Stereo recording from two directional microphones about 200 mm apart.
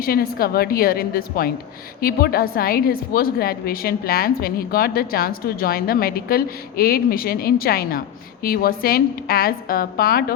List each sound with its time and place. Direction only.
0.0 s a woman's voice: 50° left (ahead or behind)